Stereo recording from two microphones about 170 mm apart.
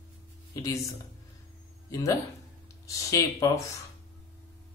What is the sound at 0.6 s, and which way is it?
Speech, 20° left (ahead or behind).